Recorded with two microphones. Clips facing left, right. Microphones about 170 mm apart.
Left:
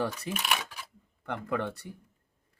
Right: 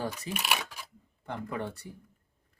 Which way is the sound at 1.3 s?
65° left (ahead or behind).